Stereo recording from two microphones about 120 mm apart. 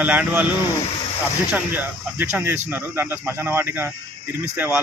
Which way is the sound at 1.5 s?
15° right (ahead or behind).